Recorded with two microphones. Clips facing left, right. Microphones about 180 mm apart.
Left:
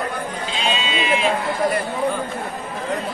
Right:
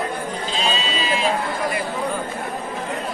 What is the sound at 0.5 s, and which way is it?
Sheep, 35° right (ahead or behind).